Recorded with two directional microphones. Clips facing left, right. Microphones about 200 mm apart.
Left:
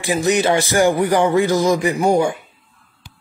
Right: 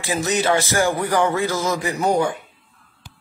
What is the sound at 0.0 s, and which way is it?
Speech, 15° left (ahead or behind).